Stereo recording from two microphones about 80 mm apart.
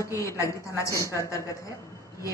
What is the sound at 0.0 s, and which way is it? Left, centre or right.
A woman's voice, left.